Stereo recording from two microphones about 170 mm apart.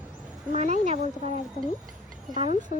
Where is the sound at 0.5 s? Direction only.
45° right (ahead or behind).